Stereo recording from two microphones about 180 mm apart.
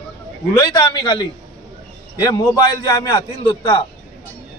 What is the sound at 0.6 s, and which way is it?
Speech, 20° left (ahead or behind).